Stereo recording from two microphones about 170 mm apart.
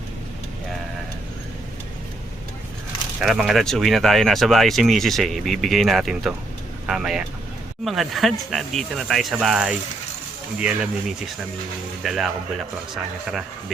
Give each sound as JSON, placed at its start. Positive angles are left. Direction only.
{"t": 3.2, "sound": "speech", "side_deg": 0}
{"t": 12.0, "sound": "speech", "side_deg": 0}